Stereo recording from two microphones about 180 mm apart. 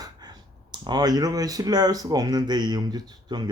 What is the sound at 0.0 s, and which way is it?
Speech, 25° right (ahead or behind).